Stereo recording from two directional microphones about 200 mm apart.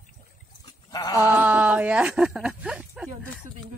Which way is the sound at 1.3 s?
10° right (ahead or behind).